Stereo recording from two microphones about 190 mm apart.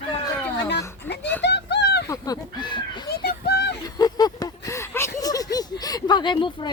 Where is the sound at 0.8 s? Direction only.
15° left (ahead or behind).